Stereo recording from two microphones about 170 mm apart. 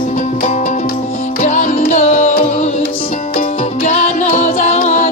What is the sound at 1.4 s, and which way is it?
Music, 50° left (ahead or behind).